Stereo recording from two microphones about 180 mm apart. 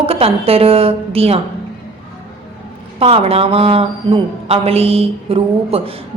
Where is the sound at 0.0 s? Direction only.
30° right (ahead or behind).